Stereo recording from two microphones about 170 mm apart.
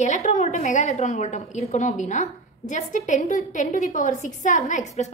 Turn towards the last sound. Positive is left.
turn(degrees=45)  # may be behind; listen again after turning